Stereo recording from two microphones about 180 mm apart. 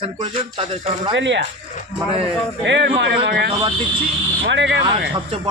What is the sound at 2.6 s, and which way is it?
Speech, 75° right (ahead or behind).